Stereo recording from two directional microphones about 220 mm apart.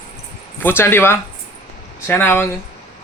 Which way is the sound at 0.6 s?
10° left (ahead or behind).